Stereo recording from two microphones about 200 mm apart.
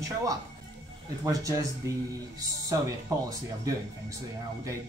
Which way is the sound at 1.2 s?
15° right (ahead or behind).